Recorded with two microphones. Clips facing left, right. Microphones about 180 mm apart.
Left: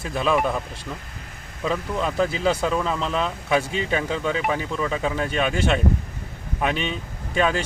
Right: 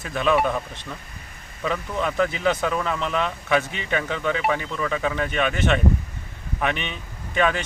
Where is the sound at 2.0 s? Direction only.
30° left (ahead or behind).